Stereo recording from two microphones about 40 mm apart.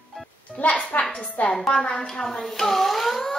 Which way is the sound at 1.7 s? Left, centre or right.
Left.